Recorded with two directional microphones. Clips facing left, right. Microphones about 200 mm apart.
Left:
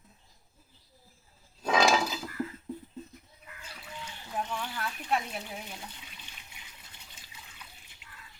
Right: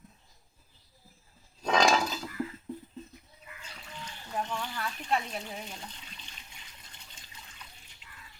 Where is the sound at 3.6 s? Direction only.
5° left (ahead or behind).